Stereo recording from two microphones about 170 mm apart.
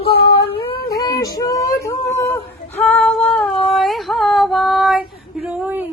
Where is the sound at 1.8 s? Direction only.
15° left (ahead or behind).